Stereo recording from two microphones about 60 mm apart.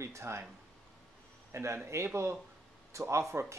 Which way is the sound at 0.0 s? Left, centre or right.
Right.